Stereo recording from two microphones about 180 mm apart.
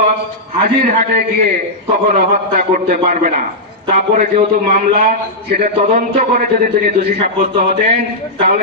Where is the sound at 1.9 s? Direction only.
50° right (ahead or behind).